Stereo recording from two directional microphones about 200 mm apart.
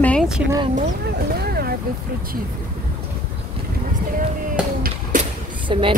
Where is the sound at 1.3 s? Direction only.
50° right (ahead or behind).